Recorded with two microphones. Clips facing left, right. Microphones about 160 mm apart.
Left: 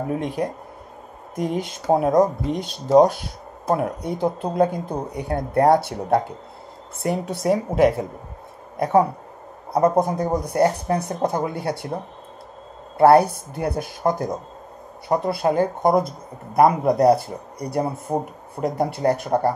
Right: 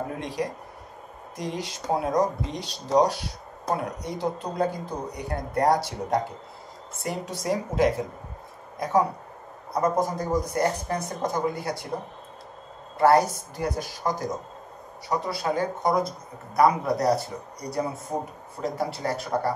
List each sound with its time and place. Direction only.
0.2 s speech: 55° left (ahead or behind)
12.9 s speech: 60° left (ahead or behind)
18.1 s speech: 35° left (ahead or behind)
18.6 s speech: 55° left (ahead or behind)